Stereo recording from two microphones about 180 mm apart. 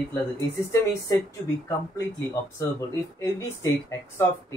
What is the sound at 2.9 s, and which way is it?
Speech, 15° left (ahead or behind).